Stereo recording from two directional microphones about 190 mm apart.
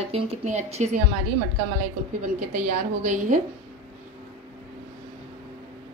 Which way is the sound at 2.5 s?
45° right (ahead or behind).